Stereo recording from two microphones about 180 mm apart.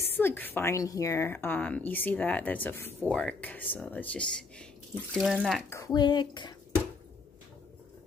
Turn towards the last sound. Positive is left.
turn(degrees=25)  # may be behind; listen again after turning